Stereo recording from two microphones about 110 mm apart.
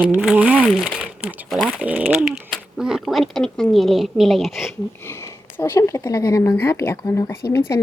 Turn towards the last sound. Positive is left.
turn(degrees=25)  # may be behind; listen again after turning